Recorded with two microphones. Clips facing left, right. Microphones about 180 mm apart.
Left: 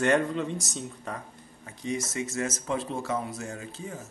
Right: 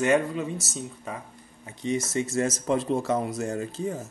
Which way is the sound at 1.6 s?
25° right (ahead or behind).